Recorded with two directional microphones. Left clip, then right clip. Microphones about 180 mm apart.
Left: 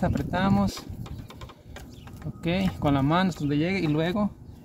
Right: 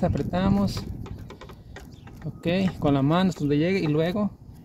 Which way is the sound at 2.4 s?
35° right (ahead or behind).